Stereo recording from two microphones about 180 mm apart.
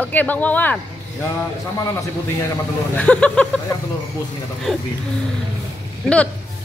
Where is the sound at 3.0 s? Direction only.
5° left (ahead or behind).